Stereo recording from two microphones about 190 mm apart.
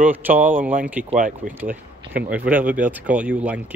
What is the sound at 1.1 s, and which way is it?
Speech, 45° right (ahead or behind).